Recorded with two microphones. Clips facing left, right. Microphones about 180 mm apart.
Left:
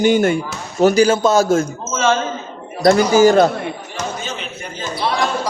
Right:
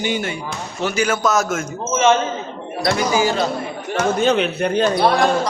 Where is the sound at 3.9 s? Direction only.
60° right (ahead or behind).